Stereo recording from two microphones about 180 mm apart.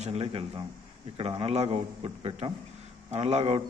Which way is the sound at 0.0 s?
35° right (ahead or behind).